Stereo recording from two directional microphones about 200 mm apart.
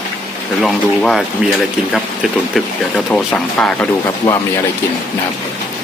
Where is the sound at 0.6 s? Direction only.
Centre (ahead or behind).